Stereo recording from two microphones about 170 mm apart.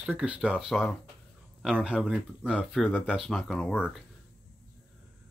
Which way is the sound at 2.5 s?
5° left (ahead or behind).